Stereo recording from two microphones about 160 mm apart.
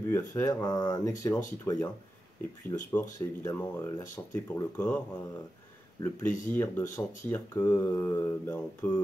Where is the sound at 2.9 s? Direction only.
15° left (ahead or behind).